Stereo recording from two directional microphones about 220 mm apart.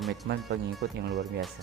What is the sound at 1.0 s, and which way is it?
Speech, 50° right (ahead or behind).